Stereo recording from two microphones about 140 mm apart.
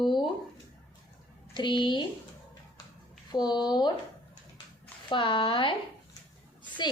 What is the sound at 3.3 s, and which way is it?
Speech, 30° left (ahead or behind).